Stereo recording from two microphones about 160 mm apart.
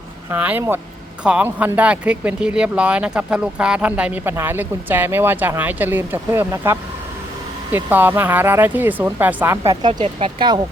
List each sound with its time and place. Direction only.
0.3 s speech: 10° right (ahead or behind)
10.0 s speech: 40° right (ahead or behind)